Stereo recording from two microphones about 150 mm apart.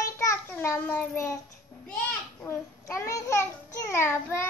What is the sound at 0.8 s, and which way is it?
Child singing, 15° left (ahead or behind).